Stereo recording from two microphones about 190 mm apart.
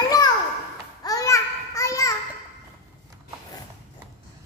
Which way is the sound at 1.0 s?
20° left (ahead or behind).